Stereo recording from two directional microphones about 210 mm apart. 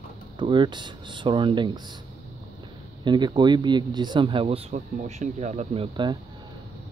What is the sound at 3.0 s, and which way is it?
Speech, 20° right (ahead or behind).